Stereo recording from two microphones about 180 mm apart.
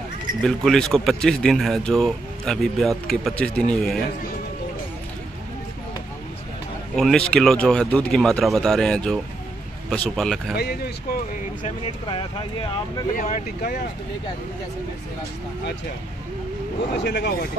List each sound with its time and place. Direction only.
0.4 s speech: 5° left (ahead or behind)
7.0 s speech: 5° left (ahead or behind)
10.5 s speech: 60° left (ahead or behind)
11.6 s speech: 30° left (ahead or behind)
13.3 s speech: 50° left (ahead or behind)
17.0 s speech: 70° left (ahead or behind)